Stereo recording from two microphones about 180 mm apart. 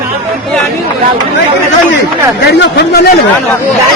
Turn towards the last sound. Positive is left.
turn(degrees=65)  # may be behind; listen again after turning